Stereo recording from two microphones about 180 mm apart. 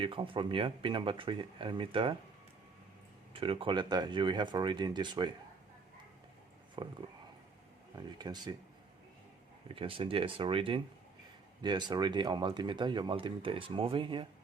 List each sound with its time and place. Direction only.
0.0 s speech: 30° right (ahead or behind)
3.3 s speech: 30° right (ahead or behind)
6.8 s speech: 25° right (ahead or behind)
7.9 s speech: 20° right (ahead or behind)
9.7 s speech: 30° right (ahead or behind)